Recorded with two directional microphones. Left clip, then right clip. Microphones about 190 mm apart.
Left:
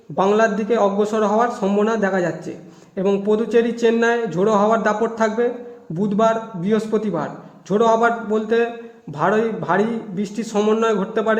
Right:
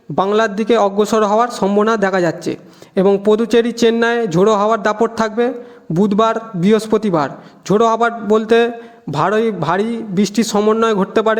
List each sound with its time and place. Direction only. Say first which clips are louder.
0.2 s a man's voice: right 2 dB; 35° right (ahead or behind)